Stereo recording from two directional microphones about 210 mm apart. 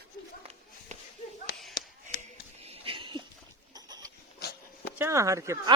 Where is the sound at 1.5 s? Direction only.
50° left (ahead or behind).